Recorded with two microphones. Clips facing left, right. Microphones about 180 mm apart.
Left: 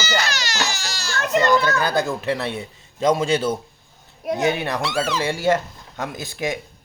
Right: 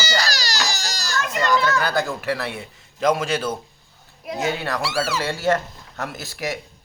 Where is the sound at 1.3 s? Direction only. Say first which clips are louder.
Left 3 dB; 25° left (ahead or behind).